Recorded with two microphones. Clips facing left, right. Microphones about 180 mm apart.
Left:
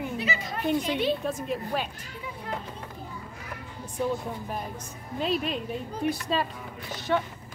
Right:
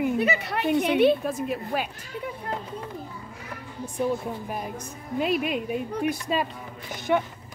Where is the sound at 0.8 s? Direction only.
60° right (ahead or behind).